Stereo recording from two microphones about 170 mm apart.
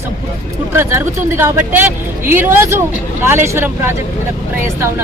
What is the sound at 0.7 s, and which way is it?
Speech, 15° right (ahead or behind).